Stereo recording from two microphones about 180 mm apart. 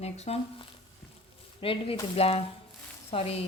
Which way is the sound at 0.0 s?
35° left (ahead or behind).